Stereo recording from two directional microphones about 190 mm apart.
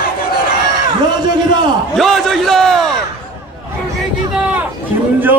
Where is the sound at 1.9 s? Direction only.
Centre (ahead or behind).